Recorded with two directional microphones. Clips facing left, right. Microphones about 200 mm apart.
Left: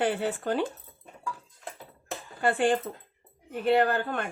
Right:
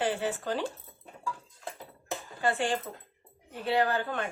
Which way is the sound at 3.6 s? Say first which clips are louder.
Left 4 dB; 55° left (ahead or behind).